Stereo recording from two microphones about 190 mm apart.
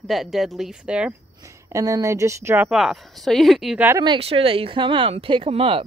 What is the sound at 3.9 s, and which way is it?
Speech, 20° right (ahead or behind).